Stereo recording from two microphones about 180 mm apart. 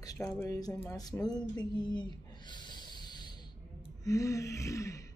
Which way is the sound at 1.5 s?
25° left (ahead or behind).